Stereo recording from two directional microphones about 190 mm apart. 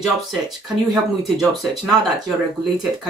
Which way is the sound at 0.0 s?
Centre (ahead or behind).